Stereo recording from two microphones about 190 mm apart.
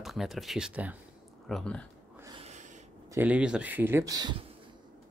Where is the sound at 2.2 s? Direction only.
30° right (ahead or behind).